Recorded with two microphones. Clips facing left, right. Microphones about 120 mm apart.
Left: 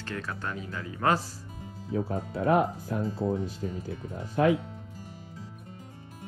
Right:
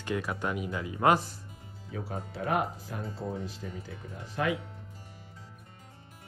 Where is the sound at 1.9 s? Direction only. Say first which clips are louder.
Left 7 dB; 90° left.